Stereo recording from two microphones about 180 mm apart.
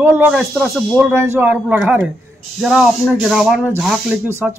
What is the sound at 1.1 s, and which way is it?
Speech, 15° right (ahead or behind).